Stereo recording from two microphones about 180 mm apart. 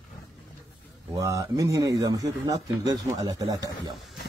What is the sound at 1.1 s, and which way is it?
Speech, 15° right (ahead or behind).